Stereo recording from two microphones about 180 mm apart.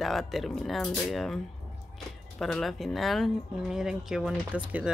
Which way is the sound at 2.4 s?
Centre (ahead or behind).